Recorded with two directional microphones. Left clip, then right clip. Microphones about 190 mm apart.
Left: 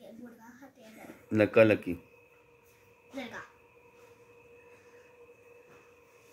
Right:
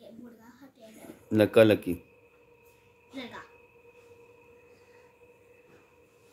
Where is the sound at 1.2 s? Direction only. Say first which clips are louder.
Right 2 dB; 25° right (ahead or behind).